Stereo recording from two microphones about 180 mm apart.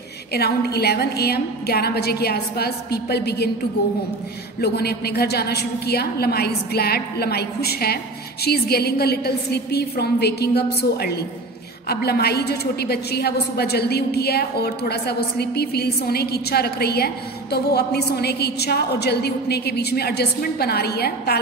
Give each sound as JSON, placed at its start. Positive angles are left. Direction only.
{"t": 0.3, "sound": "a woman's voice", "side_deg": 60}
{"t": 4.6, "sound": "a woman's voice", "side_deg": 60}